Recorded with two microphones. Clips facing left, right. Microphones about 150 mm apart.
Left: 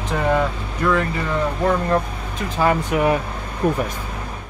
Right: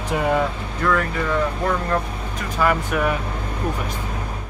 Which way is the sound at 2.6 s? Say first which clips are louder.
Left 2 dB; 25° left (ahead or behind).